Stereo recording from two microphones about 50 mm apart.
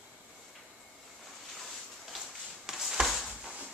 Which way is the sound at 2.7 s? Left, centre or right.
Centre.